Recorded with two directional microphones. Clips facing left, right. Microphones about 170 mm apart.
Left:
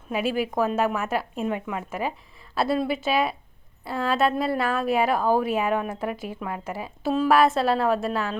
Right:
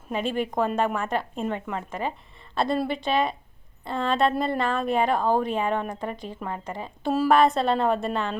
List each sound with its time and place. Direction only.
0.1 s a woman's voice: 5° left (ahead or behind)
7.1 s a woman's voice: 5° right (ahead or behind)